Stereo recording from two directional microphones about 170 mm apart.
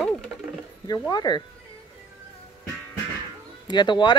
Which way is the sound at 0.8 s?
20° left (ahead or behind).